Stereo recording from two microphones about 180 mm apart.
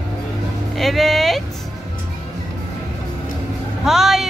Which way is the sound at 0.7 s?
Centre (ahead or behind).